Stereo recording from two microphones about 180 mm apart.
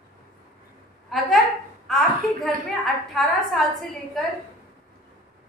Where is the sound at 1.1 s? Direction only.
Centre (ahead or behind).